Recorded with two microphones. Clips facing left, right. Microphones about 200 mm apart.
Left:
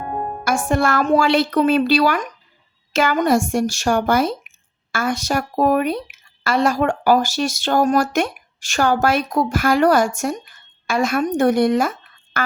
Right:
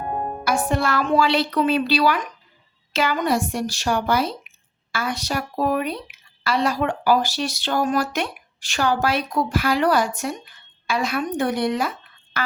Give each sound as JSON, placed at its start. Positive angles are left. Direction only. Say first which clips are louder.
{"t": 0.4, "sound": "a woman's voice", "louder": "left 3 dB", "side_deg": 50}